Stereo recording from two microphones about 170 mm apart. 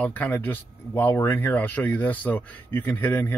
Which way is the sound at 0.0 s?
10° left (ahead or behind).